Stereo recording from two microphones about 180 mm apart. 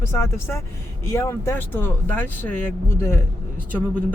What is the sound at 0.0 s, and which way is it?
A man's voice, 15° left (ahead or behind).